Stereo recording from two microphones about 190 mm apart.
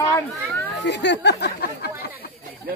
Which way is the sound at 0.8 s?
65° left (ahead or behind).